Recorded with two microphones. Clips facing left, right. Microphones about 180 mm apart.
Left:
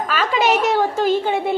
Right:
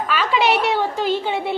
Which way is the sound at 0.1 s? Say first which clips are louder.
Even; 45° left (ahead or behind).